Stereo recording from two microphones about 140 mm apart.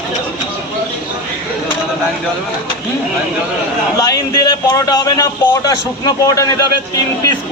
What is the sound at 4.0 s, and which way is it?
Speech, 30° left (ahead or behind).